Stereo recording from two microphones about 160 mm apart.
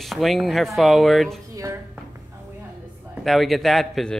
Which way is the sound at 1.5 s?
20° right (ahead or behind).